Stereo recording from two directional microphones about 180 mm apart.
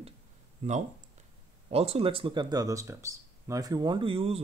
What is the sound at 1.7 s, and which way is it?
Speech, 35° right (ahead or behind).